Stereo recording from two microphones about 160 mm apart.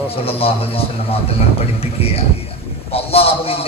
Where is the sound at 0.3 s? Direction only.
35° left (ahead or behind).